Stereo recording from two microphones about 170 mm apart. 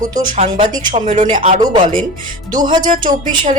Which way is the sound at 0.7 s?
50° right (ahead or behind).